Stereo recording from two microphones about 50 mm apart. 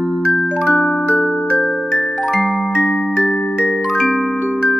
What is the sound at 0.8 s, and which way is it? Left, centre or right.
Music, left.